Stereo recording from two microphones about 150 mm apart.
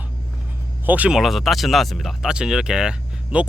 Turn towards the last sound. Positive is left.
turn(degrees=-5)  # may be behind; listen again after turning